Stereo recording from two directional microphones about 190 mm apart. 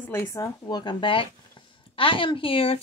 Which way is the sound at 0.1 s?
15° left (ahead or behind).